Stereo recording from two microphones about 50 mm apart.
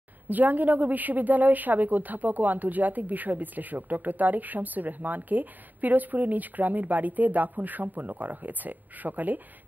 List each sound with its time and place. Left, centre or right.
0.3 s a woman's voice: right